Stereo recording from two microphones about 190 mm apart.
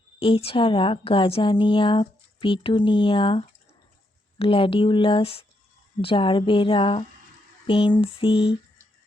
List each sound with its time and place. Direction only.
0.2 s a woman's voice: 30° left (ahead or behind)